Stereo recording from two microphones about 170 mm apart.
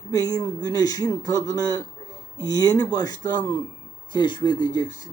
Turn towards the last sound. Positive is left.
turn(degrees=25)  # may be behind; listen again after turning